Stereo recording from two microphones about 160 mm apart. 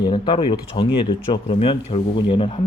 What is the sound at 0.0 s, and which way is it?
Speech, 30° left (ahead or behind).